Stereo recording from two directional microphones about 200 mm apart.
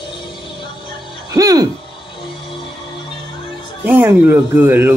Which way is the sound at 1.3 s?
20° right (ahead or behind).